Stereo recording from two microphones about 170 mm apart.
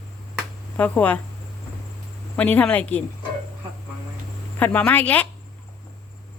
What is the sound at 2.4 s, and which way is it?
Speech, 10° left (ahead or behind).